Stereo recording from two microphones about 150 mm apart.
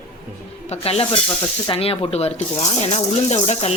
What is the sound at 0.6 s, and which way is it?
Speech, 40° left (ahead or behind).